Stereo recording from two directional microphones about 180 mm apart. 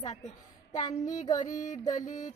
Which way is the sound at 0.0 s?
40° left (ahead or behind).